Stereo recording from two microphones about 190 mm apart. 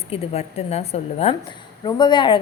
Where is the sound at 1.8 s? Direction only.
20° left (ahead or behind).